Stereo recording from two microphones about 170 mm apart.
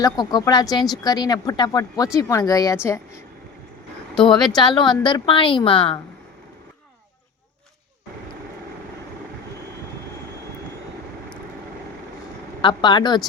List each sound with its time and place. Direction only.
0.0 s a woman's voice: 25° left (ahead or behind)
4.1 s speech: 5° left (ahead or behind)
4.6 s speech: 25° left (ahead or behind)
12.6 s speech: 25° left (ahead or behind)